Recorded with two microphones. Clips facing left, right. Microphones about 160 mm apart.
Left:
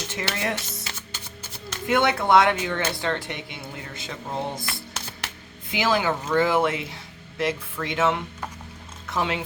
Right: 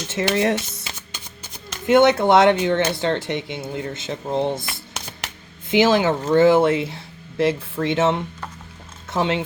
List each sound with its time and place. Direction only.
0.2 s music: 25° right (ahead or behind)
1.9 s speech: 25° right (ahead or behind)